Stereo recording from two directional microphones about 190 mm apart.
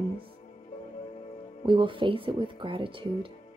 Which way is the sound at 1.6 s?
25° right (ahead or behind).